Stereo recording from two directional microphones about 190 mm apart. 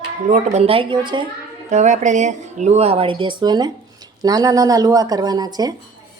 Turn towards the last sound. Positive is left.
turn(degrees=-20)  # may be behind; listen again after turning